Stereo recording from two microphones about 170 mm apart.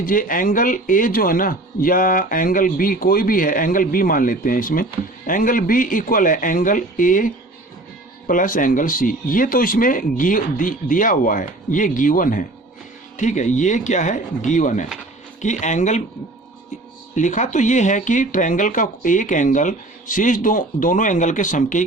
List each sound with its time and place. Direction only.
0.0 s speech: 55° left (ahead or behind)
17.2 s speech: 45° left (ahead or behind)